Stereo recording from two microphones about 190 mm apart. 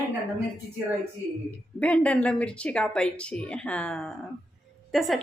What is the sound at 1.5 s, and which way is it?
A woman's voice, 5° left (ahead or behind).